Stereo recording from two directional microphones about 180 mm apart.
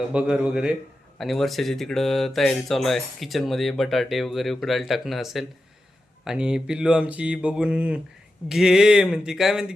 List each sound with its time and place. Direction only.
0.1 s speech: 5° right (ahead or behind)